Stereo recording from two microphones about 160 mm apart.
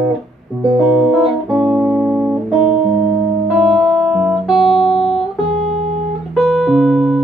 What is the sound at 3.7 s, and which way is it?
Music, centre (ahead or behind).